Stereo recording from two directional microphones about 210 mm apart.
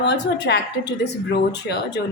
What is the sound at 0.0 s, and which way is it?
A woman's voice, 55° left (ahead or behind).